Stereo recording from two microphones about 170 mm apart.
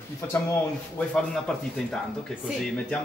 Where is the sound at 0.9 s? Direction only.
5° left (ahead or behind).